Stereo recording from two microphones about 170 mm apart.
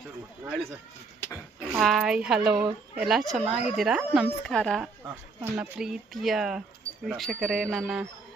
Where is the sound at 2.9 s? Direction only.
Centre (ahead or behind).